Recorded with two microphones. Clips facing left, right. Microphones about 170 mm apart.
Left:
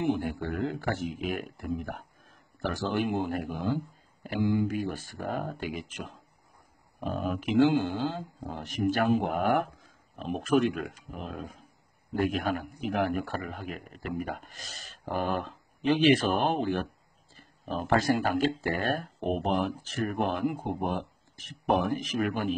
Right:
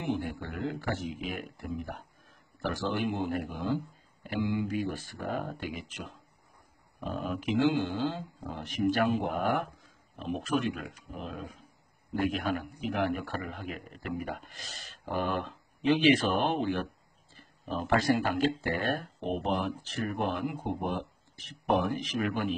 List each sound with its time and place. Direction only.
0.0 s a man's voice: 50° left (ahead or behind)